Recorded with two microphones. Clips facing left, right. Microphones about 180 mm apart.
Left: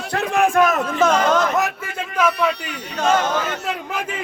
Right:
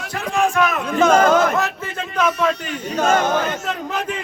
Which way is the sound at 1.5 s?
15° left (ahead or behind).